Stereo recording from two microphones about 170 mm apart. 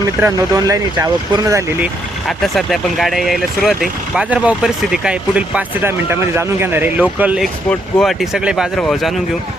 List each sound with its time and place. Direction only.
0.2 s speech: 20° right (ahead or behind)
2.2 s speech: centre (ahead or behind)